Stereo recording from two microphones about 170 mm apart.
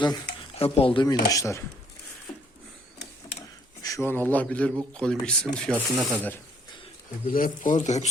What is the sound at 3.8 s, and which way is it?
A man's voice, 20° left (ahead or behind).